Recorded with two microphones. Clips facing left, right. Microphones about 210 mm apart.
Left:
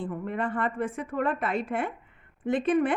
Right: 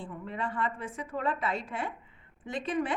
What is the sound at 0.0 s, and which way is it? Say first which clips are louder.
A woman's voice: left 6 dB; 55° left (ahead or behind).